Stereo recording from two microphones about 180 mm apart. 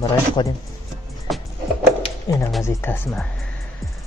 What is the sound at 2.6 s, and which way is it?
Speech, 15° left (ahead or behind).